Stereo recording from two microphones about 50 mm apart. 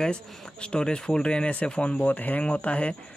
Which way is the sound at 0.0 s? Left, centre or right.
Centre.